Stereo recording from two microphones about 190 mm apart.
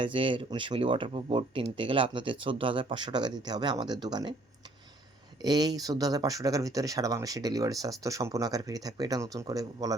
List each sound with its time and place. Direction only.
0.0 s speech: 25° right (ahead or behind)
5.4 s speech: 20° right (ahead or behind)